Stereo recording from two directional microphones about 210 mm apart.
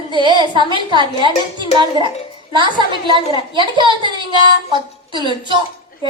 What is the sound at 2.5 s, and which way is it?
A woman's voice, 25° right (ahead or behind).